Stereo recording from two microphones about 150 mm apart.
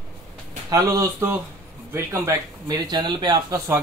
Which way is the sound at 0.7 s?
20° right (ahead or behind).